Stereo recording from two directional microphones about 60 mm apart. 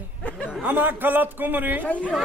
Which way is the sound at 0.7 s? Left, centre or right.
Right.